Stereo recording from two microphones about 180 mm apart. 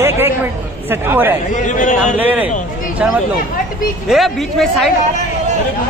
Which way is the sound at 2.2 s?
10° right (ahead or behind).